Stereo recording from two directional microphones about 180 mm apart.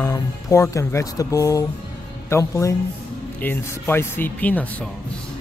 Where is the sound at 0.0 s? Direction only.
15° left (ahead or behind).